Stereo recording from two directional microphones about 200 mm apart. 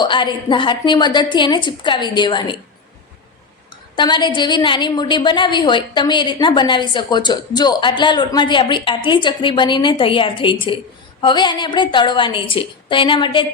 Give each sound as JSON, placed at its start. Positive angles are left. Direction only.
{"t": 0.0, "sound": "a woman's voice", "side_deg": 25}
{"t": 3.9, "sound": "a woman's voice", "side_deg": 25}